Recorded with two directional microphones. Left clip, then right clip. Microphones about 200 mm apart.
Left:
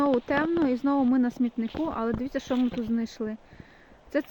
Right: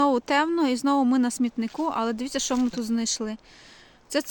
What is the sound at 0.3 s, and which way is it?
Speech, 15° right (ahead or behind).